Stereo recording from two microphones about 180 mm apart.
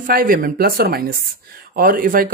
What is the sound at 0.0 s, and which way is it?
Speech, 50° right (ahead or behind).